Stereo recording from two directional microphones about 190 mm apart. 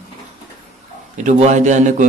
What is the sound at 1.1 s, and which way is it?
Speech, 40° right (ahead or behind).